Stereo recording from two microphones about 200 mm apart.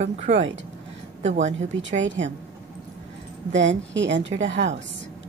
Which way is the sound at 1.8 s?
65° right (ahead or behind).